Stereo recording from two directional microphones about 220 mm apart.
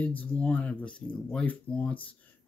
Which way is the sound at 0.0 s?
5° left (ahead or behind).